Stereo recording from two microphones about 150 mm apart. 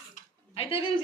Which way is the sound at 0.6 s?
40° left (ahead or behind).